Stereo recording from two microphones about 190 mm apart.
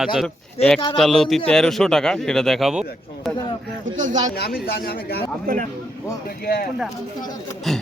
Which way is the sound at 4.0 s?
40° right (ahead or behind).